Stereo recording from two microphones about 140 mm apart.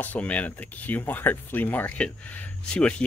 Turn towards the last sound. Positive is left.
turn(degrees=5)  # may be behind; listen again after turning